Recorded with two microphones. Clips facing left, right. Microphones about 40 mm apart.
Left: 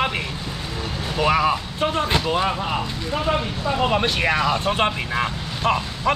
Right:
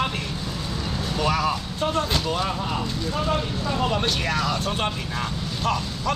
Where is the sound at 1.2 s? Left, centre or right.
Left.